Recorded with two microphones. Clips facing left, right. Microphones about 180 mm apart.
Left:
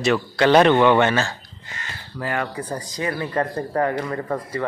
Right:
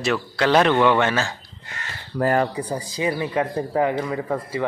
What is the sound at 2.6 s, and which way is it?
Speech, 10° right (ahead or behind).